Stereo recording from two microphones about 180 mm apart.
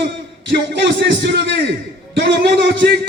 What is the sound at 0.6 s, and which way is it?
A man's voice, 75° right (ahead or behind).